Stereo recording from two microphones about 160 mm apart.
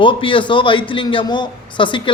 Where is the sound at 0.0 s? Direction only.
30° left (ahead or behind).